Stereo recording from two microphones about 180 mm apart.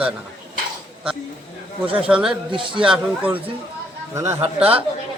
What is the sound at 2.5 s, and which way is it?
Speech, 30° right (ahead or behind).